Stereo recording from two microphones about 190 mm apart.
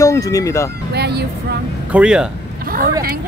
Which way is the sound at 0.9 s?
60° right (ahead or behind).